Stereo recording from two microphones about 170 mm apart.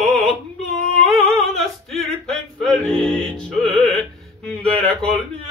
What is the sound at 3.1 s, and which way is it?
Music, 5° left (ahead or behind).